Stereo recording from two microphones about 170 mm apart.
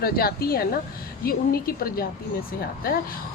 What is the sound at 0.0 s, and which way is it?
A woman's voice, 65° left (ahead or behind).